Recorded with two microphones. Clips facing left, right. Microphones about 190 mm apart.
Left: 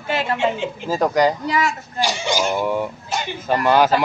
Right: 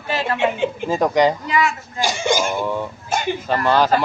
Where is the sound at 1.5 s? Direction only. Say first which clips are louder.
Right 1 dB; 40° left (ahead or behind).